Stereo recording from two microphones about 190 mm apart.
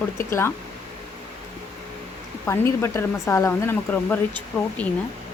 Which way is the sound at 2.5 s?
15° left (ahead or behind).